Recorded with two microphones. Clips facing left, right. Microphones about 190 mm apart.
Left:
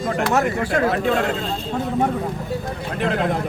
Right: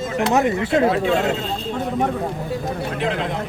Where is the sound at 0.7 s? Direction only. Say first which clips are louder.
Right 3 dB; 25° right (ahead or behind).